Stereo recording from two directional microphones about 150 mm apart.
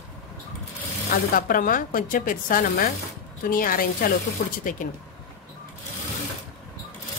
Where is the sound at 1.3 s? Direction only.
70° left (ahead or behind).